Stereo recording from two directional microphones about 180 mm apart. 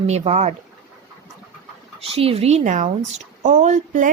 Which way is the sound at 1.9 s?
30° right (ahead or behind).